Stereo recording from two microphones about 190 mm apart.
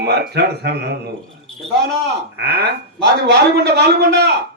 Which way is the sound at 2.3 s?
60° right (ahead or behind).